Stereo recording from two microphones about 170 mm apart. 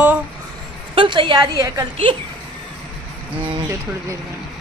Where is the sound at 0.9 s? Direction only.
30° right (ahead or behind).